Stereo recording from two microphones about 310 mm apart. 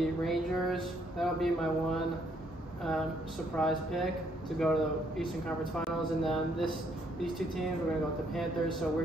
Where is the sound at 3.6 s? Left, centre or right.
Centre.